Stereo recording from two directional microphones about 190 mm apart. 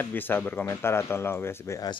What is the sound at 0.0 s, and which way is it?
A man's voice, 10° left (ahead or behind).